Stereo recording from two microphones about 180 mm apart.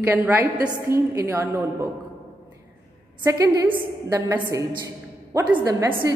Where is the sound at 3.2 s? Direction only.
15° right (ahead or behind).